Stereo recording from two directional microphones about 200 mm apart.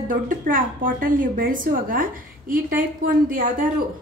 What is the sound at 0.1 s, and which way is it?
A woman's voice, 45° right (ahead or behind).